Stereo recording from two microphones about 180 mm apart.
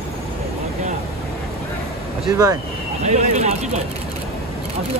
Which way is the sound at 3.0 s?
40° right (ahead or behind).